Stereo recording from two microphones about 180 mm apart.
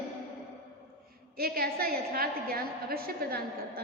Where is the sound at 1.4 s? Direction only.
55° right (ahead or behind).